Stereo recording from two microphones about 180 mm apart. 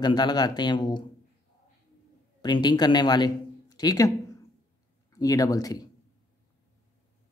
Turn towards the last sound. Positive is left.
turn(degrees=20)  # may be behind; listen again after turning